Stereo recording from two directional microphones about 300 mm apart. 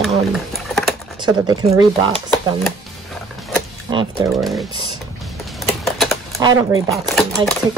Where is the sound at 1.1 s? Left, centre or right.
Centre.